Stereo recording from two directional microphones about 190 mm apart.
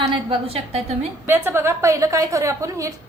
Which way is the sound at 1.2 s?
10° right (ahead or behind).